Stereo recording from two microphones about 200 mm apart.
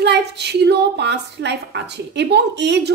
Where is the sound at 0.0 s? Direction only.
55° right (ahead or behind).